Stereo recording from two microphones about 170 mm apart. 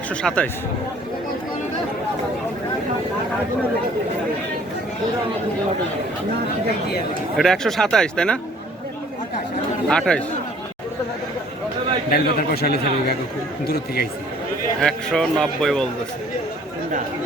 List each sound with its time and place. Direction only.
0.2 s a man's voice: 5° left (ahead or behind)
7.3 s a man's voice: centre (ahead or behind)
9.9 s a man's voice: 5° left (ahead or behind)
12.1 s speech: 65° left (ahead or behind)
14.8 s a man's voice: 5° left (ahead or behind)